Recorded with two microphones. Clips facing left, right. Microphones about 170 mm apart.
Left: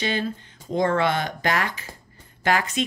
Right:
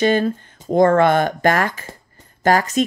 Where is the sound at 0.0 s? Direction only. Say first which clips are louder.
Right 9 dB; 50° right (ahead or behind).